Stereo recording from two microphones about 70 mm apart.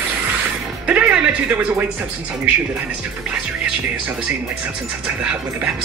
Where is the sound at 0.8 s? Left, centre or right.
Centre.